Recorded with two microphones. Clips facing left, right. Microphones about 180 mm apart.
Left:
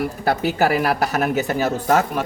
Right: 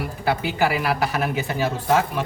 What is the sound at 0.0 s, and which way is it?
Speech, 45° left (ahead or behind).